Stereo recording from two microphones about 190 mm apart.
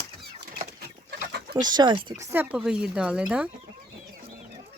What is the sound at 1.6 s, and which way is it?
Speech, 20° right (ahead or behind).